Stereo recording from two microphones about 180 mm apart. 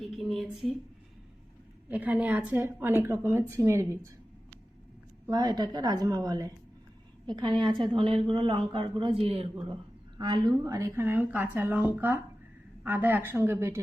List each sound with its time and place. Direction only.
0.0 s a woman's voice: centre (ahead or behind)
1.9 s a woman's voice: 10° right (ahead or behind)
5.2 s a woman's voice: 20° right (ahead or behind)